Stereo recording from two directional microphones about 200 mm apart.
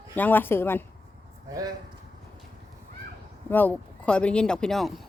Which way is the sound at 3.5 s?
10° left (ahead or behind).